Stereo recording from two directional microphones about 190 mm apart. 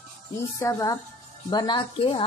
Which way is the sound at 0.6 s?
15° left (ahead or behind).